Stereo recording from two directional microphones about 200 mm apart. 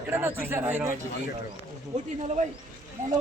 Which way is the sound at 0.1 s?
10° right (ahead or behind).